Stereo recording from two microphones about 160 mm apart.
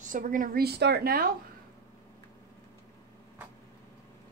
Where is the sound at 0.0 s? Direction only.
55° right (ahead or behind).